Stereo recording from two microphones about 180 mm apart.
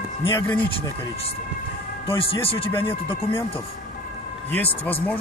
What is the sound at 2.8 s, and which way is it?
Speech, 30° left (ahead or behind).